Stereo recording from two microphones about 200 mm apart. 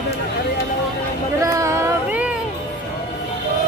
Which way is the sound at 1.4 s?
15° right (ahead or behind).